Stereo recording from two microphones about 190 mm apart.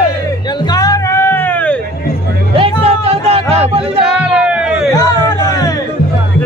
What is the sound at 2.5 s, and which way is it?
Music, 30° right (ahead or behind).